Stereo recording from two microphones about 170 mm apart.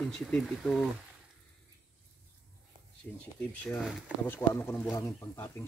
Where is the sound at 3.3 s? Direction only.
10° left (ahead or behind).